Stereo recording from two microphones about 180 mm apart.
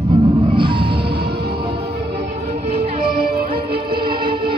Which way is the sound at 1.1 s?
60° right (ahead or behind).